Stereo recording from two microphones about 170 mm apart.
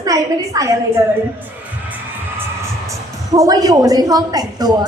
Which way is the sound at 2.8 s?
20° right (ahead or behind).